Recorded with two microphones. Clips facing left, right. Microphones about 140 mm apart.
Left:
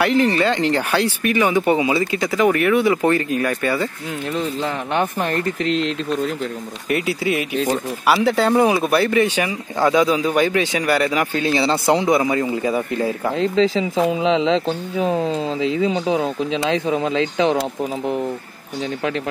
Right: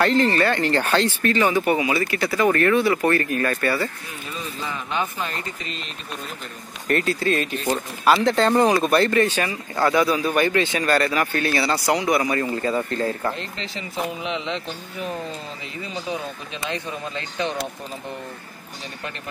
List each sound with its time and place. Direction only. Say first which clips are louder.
0.0 s speech: left 2 dB; 10° left (ahead or behind)
4.3 s speech: left 8 dB; 70° left (ahead or behind); by 6.3 s 90° left
6.9 s speech: left 1 dB; 10° left (ahead or behind)
15.0 s speech: left 10 dB; 90° left